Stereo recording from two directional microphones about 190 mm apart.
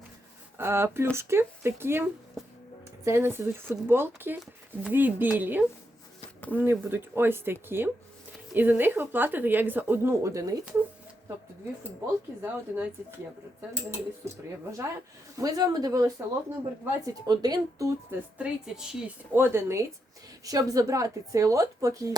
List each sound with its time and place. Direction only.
0.5 s a woman's voice: 15° right (ahead or behind)
12.4 s a woman's voice: 10° right (ahead or behind)
14.2 s a woman's voice: 15° right (ahead or behind)